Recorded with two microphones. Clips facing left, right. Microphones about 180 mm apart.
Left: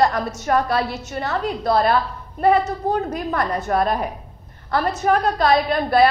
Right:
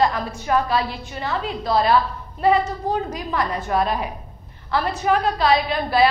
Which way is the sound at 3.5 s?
45° left (ahead or behind).